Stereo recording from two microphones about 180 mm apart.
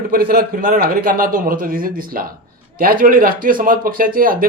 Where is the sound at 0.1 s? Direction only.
55° right (ahead or behind).